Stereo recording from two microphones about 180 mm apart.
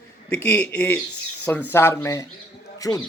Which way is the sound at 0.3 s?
10° left (ahead or behind).